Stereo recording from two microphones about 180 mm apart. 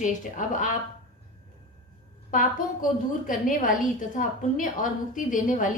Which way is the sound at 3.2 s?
50° left (ahead or behind).